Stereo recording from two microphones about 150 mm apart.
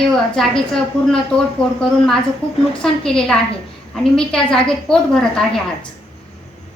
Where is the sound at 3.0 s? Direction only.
5° left (ahead or behind).